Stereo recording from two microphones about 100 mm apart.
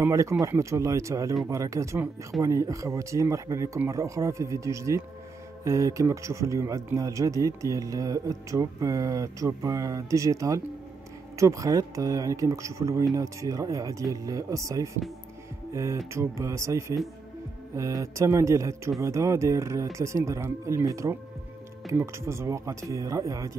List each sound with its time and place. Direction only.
0.0 s a man's voice: 30° right (ahead or behind)